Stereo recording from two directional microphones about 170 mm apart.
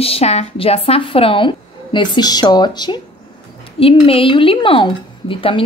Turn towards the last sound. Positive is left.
turn(degrees=30)  # may be behind; listen again after turning